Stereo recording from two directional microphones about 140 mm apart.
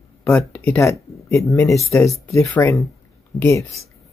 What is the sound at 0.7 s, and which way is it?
Speech, 20° left (ahead or behind).